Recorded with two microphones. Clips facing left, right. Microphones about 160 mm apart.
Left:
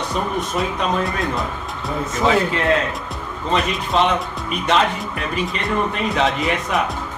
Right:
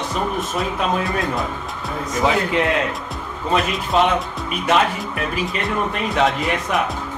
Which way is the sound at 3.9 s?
5° right (ahead or behind).